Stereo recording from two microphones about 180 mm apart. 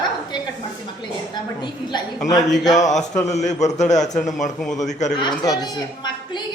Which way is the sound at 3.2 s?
40° left (ahead or behind).